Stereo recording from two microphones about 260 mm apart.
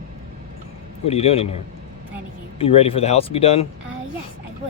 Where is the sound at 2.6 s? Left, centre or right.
Left.